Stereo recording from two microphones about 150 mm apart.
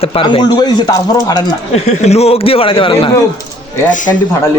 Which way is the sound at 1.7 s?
45° left (ahead or behind).